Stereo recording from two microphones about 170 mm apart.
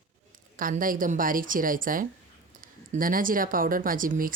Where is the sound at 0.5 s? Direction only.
55° right (ahead or behind).